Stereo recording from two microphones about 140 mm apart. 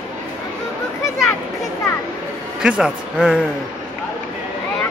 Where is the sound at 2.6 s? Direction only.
5° right (ahead or behind).